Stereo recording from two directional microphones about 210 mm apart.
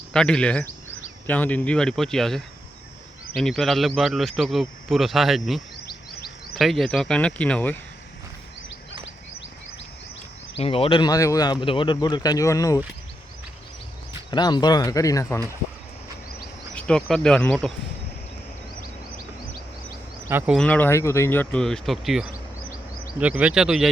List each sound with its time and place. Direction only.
0.1 s a man's voice: 5° left (ahead or behind)
10.6 s speech: 25° left (ahead or behind)
14.3 s speech: 20° left (ahead or behind)
16.7 s speech: 5° left (ahead or behind)
18.8 s a sound: 40° left (ahead or behind)
20.2 s speech: 10° right (ahead or behind)
20.6 s speech: 5° left (ahead or behind)